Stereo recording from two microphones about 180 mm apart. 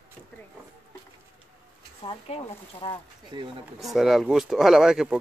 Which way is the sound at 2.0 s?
35° left (ahead or behind).